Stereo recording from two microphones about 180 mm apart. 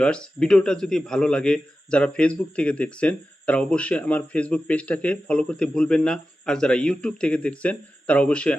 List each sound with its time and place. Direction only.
0.0 s speech: 5° left (ahead or behind)